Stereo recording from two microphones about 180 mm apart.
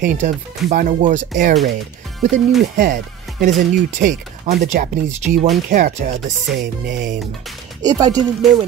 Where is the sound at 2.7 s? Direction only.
45° right (ahead or behind).